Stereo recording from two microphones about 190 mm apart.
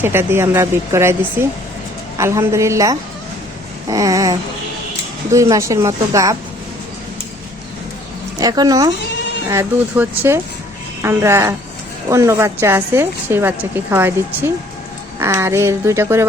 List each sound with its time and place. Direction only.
0.0 s a woman's voice: 10° right (ahead or behind)
8.4 s a woman's voice: 20° right (ahead or behind)